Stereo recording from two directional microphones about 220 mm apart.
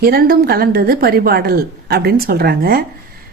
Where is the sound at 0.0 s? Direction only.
45° right (ahead or behind).